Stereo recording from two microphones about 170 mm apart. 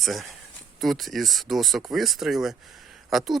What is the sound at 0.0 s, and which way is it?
Speech, centre (ahead or behind).